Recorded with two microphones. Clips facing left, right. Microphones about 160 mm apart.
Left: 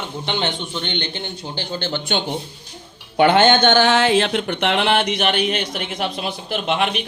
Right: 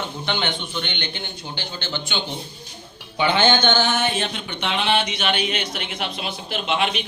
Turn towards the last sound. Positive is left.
turn(degrees=45)  # may be behind; listen again after turning